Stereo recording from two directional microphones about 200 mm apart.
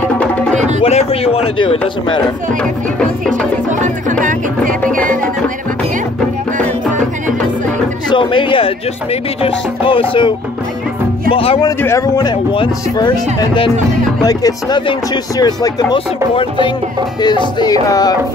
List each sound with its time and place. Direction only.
0.8 s speech: 30° left (ahead or behind)
2.6 s music: 5° left (ahead or behind)
3.8 s music: 40° right (ahead or behind)
8.1 s speech: 25° left (ahead or behind)
11.3 s speech: 25° left (ahead or behind)
11.8 s speech: 15° left (ahead or behind)